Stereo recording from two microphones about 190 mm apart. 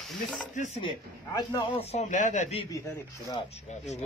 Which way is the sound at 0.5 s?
35° left (ahead or behind).